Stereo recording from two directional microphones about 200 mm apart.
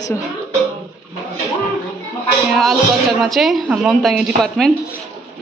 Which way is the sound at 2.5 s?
Centre (ahead or behind).